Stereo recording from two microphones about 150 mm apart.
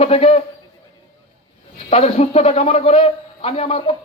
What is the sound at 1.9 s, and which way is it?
A man's voice, 40° left (ahead or behind).